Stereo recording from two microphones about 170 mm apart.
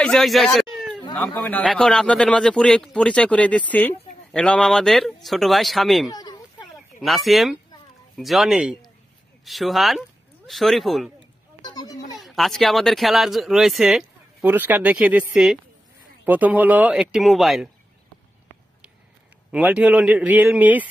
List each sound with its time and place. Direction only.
0.0 s a man's voice: centre (ahead or behind)
6.1 s a sound: 25° left (ahead or behind)
7.0 s a man's voice: centre (ahead or behind)
11.6 s a sound: 25° left (ahead or behind)
12.2 s a man's voice: centre (ahead or behind)
19.5 s a man's voice: 5° right (ahead or behind)